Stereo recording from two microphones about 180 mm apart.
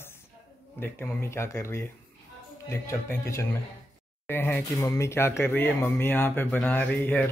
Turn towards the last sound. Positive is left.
turn(degrees=10)  # may be behind; listen again after turning